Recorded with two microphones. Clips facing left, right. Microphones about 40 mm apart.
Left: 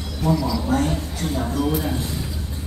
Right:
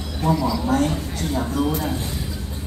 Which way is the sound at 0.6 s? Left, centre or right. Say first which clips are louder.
Right 1 dB; right.